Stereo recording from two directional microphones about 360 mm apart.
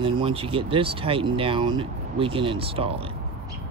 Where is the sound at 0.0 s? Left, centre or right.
Centre.